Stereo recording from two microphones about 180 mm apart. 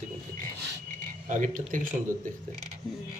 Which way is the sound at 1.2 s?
45° right (ahead or behind).